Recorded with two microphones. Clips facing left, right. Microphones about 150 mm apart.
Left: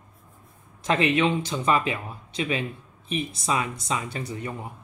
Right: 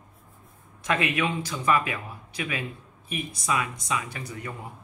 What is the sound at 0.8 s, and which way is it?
Speech, 25° left (ahead or behind).